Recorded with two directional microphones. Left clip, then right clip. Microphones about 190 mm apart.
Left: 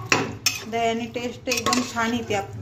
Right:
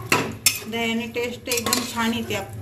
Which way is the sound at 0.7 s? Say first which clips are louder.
Left 1 dB; 35° left (ahead or behind).